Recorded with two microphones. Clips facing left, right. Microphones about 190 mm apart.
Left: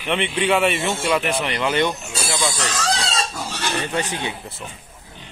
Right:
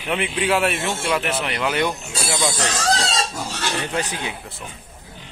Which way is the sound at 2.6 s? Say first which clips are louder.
Right 2 dB; 45° right (ahead or behind).